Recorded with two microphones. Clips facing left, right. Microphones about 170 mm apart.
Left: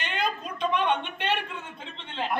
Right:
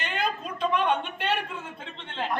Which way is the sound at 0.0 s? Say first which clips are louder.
Even; 5° right (ahead or behind).